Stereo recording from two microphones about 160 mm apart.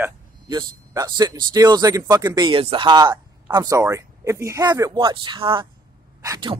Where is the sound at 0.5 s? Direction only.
25° right (ahead or behind).